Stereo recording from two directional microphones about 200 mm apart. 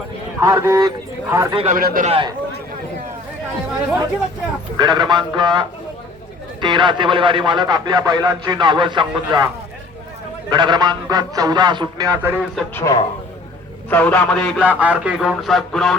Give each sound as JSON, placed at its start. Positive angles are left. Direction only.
{"t": 0.3, "sound": "a man's voice", "side_deg": -15}
{"t": 1.7, "sound": "a man's voice", "side_deg": -45}
{"t": 2.0, "sound": "speech", "side_deg": -25}
{"t": 4.8, "sound": "speech", "side_deg": -20}
{"t": 10.5, "sound": "speech", "side_deg": -20}
{"t": 12.5, "sound": "a man's voice", "side_deg": 15}
{"t": 14.6, "sound": "speech", "side_deg": -5}